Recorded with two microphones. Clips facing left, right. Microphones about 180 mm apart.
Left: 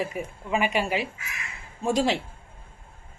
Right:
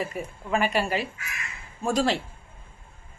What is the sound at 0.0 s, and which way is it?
A woman's voice, 10° left (ahead or behind).